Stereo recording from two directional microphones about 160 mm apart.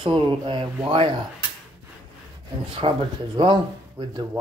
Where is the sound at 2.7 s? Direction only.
35° right (ahead or behind).